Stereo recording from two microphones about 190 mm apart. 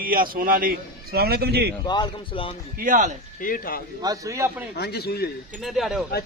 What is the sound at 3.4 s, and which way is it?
Speech, 45° left (ahead or behind).